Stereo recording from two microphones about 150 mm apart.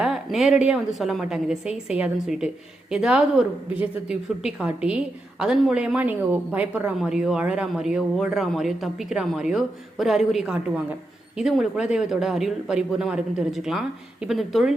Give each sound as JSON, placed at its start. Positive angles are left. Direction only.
{"t": 0.0, "sound": "a woman's voice", "side_deg": -5}